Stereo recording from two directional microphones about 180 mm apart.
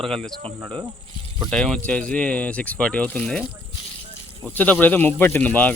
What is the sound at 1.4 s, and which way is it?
Speech, 5° left (ahead or behind).